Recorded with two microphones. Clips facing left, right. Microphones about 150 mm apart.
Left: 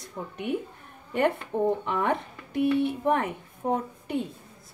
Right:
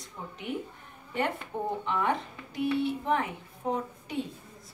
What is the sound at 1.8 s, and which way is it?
Speech, 55° left (ahead or behind).